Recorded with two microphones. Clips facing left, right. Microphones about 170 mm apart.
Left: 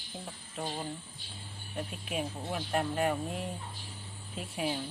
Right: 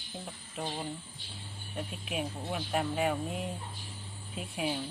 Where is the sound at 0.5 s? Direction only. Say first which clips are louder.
Even; centre (ahead or behind).